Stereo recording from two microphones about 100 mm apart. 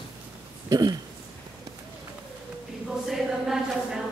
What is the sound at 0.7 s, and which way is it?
Speech, 40° right (ahead or behind).